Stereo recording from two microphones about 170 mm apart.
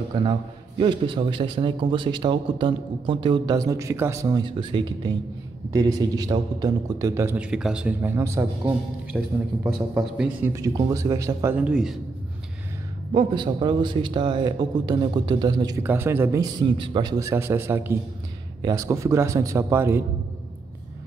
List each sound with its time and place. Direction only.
0.1 s a man's voice: 30° right (ahead or behind); by 10.5 s 5° right (ahead or behind)
10.5 s a man's voice: 20° right (ahead or behind); by 12.0 s 5° right (ahead or behind)
13.1 s a man's voice: 30° right (ahead or behind)
17.2 s a man's voice: 15° right (ahead or behind)